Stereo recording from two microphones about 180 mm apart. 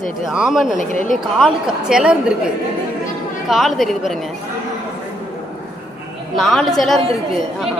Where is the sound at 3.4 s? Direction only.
Centre (ahead or behind).